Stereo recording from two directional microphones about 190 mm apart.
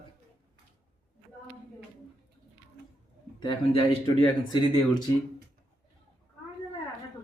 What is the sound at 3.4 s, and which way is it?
A man's voice, 25° left (ahead or behind).